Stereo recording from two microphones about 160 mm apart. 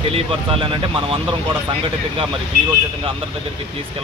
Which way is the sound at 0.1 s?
35° right (ahead or behind).